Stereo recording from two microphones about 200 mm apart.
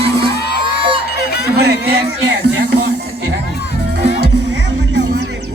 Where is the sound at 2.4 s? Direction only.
55° right (ahead or behind).